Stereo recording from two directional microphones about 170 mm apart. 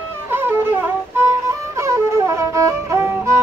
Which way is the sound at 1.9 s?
15° right (ahead or behind).